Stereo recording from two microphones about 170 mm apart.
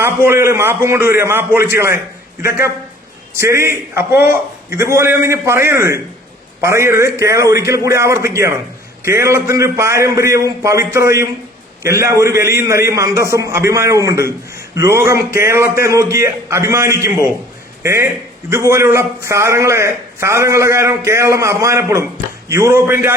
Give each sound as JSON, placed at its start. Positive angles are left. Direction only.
{"t": 0.0, "sound": "a man's voice", "side_deg": -15}